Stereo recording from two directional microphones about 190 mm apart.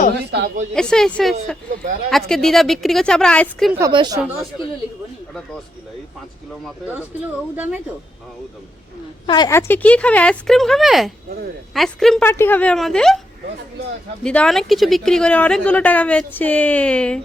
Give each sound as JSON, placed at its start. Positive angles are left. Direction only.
{"t": 0.3, "sound": "a woman's voice", "side_deg": -60}
{"t": 0.7, "sound": "a woman's voice", "side_deg": 5}
{"t": 3.8, "sound": "a woman's voice", "side_deg": -20}
{"t": 7.5, "sound": "speech", "side_deg": -10}
{"t": 9.2, "sound": "a woman's voice", "side_deg": 20}
{"t": 14.3, "sound": "a woman's voice", "side_deg": 5}